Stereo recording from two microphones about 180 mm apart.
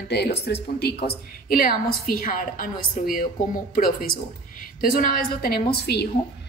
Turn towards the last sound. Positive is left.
turn(degrees=60)  # may be behind; listen again after turning